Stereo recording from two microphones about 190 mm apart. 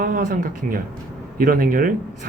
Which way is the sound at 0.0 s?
45° right (ahead or behind).